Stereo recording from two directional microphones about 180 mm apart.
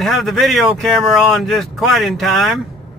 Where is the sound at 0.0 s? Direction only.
Centre (ahead or behind).